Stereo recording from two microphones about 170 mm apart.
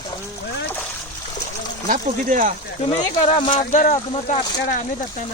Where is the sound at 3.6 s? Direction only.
45° left (ahead or behind).